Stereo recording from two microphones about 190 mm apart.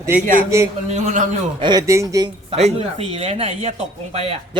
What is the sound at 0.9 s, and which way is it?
Speech, 40° right (ahead or behind).